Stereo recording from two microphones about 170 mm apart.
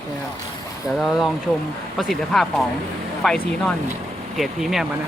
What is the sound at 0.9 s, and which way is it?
Speech, centre (ahead or behind).